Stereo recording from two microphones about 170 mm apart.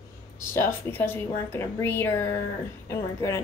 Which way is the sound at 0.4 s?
15° left (ahead or behind).